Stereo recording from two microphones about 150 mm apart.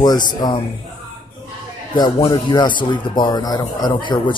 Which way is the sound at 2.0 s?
30° left (ahead or behind).